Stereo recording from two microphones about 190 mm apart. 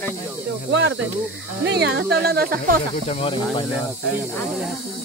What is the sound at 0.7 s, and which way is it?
Speech, 65° right (ahead or behind).